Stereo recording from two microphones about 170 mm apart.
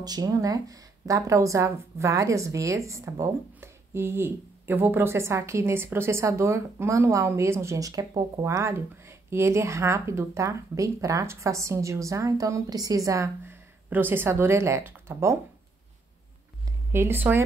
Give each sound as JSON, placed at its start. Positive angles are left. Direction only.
{"t": 0.0, "sound": "speech", "side_deg": -20}
{"t": 16.9, "sound": "speech", "side_deg": -15}